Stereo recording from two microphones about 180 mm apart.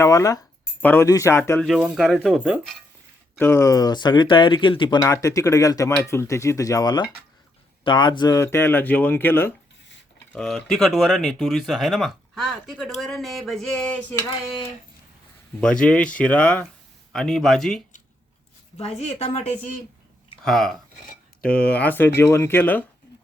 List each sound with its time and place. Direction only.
0.0 s speech: 15° left (ahead or behind)
1.6 s speech: centre (ahead or behind)
3.3 s speech: 15° left (ahead or behind)
15.6 s speech: 5° left (ahead or behind)
18.8 s a woman's voice: 35° left (ahead or behind)
20.4 s speech: centre (ahead or behind)